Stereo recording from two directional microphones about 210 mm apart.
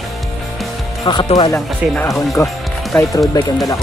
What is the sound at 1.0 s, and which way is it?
Speech, 20° left (ahead or behind).